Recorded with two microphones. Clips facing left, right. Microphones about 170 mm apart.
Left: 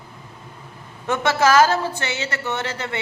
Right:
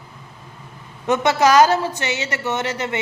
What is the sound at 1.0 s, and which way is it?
A woman's voice, 20° right (ahead or behind).